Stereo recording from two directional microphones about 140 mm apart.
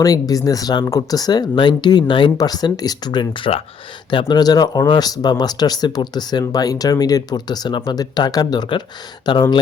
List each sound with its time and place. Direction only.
0.0 s speech: 25° left (ahead or behind)